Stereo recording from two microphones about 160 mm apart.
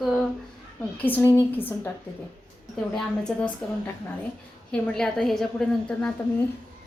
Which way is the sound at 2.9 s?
5° left (ahead or behind).